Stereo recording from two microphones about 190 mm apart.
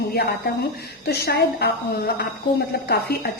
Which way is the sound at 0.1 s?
55° left (ahead or behind).